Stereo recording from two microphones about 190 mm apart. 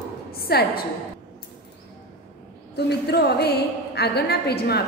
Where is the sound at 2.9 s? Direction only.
60° left (ahead or behind).